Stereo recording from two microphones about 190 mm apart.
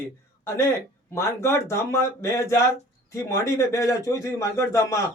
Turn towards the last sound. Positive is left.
turn(degrees=15)  # may be behind; listen again after turning